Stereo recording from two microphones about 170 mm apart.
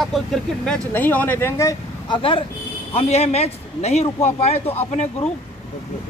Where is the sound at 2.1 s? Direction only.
30° left (ahead or behind).